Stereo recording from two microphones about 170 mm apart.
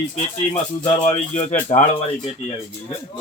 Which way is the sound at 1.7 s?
35° left (ahead or behind).